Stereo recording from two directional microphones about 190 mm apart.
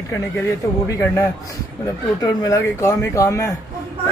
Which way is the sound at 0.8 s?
15° left (ahead or behind).